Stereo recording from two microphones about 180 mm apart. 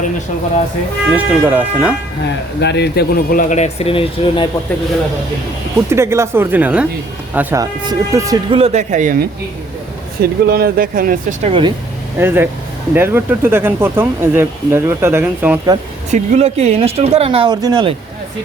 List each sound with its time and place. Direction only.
1.1 s speech: 10° right (ahead or behind)
2.6 s speech: 70° left (ahead or behind); by 4.4 s 30° left (ahead or behind)
5.9 s speech: 15° right (ahead or behind)
8.4 s speech: 35° right (ahead or behind)
10.2 s speech: 60° right (ahead or behind)
11.4 s speech: 30° right (ahead or behind)
12.2 s speech: 10° right (ahead or behind)
16.1 s speech: 40° right (ahead or behind)